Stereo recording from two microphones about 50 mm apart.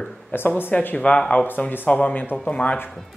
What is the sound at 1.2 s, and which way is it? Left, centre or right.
Speech, centre.